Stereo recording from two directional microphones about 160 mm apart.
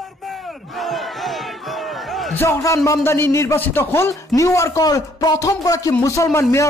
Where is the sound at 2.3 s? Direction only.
15° left (ahead or behind).